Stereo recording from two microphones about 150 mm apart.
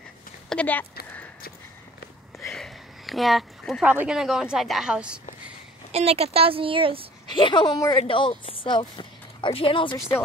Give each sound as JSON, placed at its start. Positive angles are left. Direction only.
{"t": 0.5, "sound": "speech", "side_deg": 10}
{"t": 2.5, "sound": "a sound", "side_deg": 0}
{"t": 3.8, "sound": "a woman's voice", "side_deg": -10}
{"t": 5.9, "sound": "speech", "side_deg": -45}
{"t": 7.2, "sound": "a woman's voice", "side_deg": 30}